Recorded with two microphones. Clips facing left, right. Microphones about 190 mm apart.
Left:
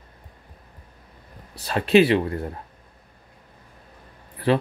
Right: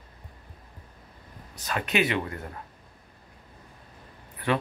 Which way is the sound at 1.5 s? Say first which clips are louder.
Left 11 dB; 35° left (ahead or behind).